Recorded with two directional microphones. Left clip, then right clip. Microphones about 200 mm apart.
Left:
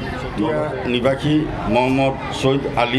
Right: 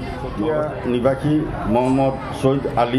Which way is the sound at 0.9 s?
35° right (ahead or behind).